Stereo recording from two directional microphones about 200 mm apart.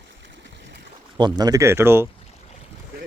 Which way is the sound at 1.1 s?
20° right (ahead or behind).